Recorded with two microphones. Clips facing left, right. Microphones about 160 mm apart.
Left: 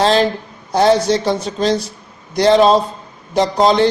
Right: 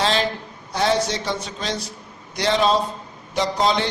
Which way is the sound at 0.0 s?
40° left (ahead or behind).